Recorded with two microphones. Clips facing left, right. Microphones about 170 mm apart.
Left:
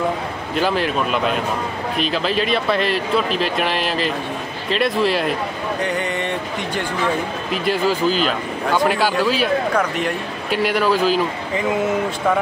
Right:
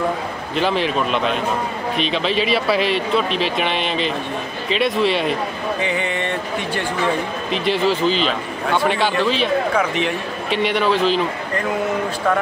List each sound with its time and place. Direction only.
0.6 s speech: centre (ahead or behind)
5.9 s speech: 65° right (ahead or behind)
7.5 s speech: 5° left (ahead or behind)